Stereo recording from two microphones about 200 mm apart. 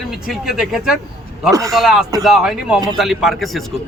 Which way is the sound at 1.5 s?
15° right (ahead or behind).